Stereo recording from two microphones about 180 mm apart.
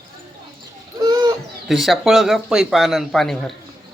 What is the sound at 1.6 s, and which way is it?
Speech, centre (ahead or behind).